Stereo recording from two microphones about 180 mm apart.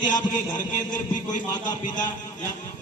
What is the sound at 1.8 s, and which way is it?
Speech, 45° left (ahead or behind).